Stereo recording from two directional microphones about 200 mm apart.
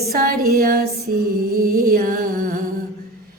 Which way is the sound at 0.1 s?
50° right (ahead or behind).